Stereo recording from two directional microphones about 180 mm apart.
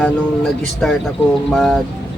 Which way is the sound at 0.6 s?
5° left (ahead or behind).